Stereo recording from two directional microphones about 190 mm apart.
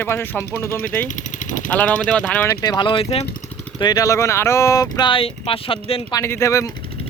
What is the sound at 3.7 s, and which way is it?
Speech, 20° left (ahead or behind).